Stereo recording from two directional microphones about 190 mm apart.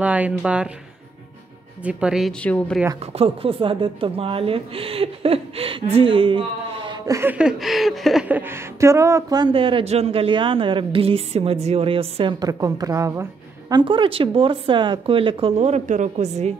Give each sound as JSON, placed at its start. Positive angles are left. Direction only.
{"t": 0.0, "sound": "speech", "side_deg": -5}
{"t": 1.8, "sound": "speech", "side_deg": -5}
{"t": 3.0, "sound": "speech", "side_deg": -30}